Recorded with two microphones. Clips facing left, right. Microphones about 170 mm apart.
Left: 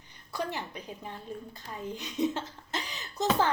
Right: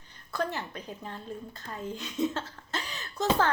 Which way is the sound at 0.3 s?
15° left (ahead or behind).